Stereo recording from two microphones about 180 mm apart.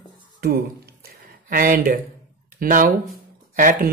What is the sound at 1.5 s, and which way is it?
Speech, 50° right (ahead or behind).